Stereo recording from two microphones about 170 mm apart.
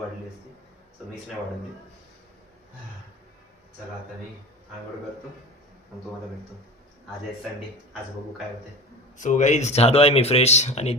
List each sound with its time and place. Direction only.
9.1 s speech: 50° left (ahead or behind)